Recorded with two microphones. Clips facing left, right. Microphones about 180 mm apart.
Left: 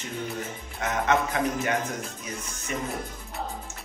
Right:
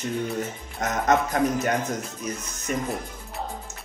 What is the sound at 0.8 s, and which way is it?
Speech, 40° right (ahead or behind).